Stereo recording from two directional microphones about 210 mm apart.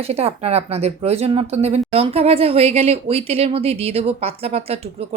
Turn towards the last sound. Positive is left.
turn(degrees=-30)  # may be behind; listen again after turning